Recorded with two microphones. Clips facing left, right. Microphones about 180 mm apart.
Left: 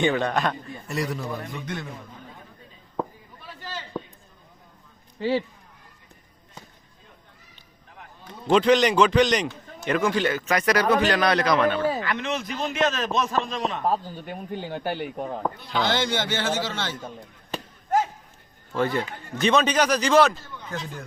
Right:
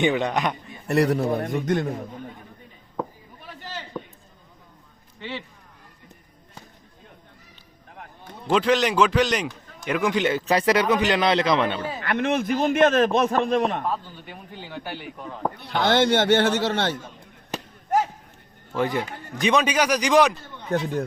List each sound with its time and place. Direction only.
0.0 s a man's voice: 20° right (ahead or behind)
0.9 s a man's voice: 65° right (ahead or behind)
5.2 s speech: 35° left (ahead or behind)
7.9 s a sound: 50° right (ahead or behind)
8.4 s a man's voice: 5° right (ahead or behind); by 11.9 s 25° right (ahead or behind)
12.0 s a man's voice: 55° right (ahead or behind)
13.8 s a man's voice: 40° left (ahead or behind)
15.5 s a man's voice: 60° right (ahead or behind)
18.7 s a man's voice: 15° right (ahead or behind)
20.7 s a man's voice: 60° right (ahead or behind)